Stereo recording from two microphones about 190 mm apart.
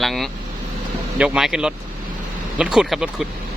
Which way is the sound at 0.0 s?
Centre (ahead or behind).